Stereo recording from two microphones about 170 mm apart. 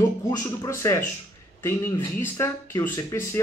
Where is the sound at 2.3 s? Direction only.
15° left (ahead or behind).